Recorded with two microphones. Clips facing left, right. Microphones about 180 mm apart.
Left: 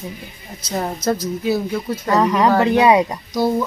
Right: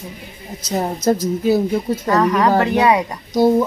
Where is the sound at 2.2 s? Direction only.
15° left (ahead or behind).